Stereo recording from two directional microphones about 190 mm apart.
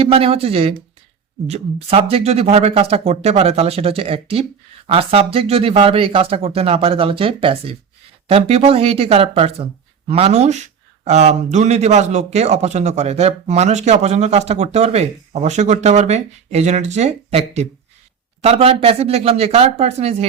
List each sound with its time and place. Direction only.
0.0 s speech: 30° right (ahead or behind)